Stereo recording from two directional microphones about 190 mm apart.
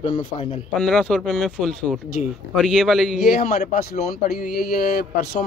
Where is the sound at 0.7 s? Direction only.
5° left (ahead or behind).